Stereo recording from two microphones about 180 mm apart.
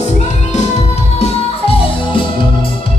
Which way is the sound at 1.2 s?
30° left (ahead or behind).